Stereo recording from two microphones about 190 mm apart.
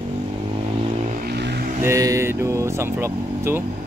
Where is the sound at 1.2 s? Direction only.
60° right (ahead or behind).